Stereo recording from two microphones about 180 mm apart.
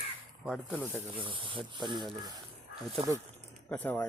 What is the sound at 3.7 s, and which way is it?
Speech, 10° left (ahead or behind).